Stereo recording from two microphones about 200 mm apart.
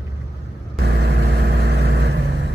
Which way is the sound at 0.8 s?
55° right (ahead or behind).